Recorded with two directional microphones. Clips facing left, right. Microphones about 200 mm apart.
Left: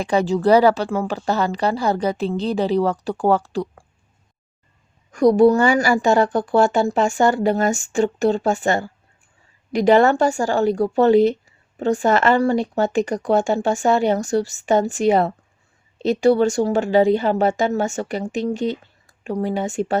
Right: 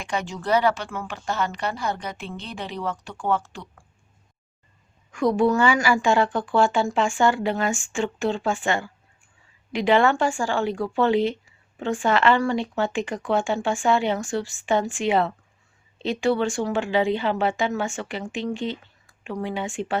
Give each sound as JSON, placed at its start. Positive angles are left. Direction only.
{"t": 0.0, "sound": "speech", "side_deg": 35}
{"t": 5.1, "sound": "speech", "side_deg": 40}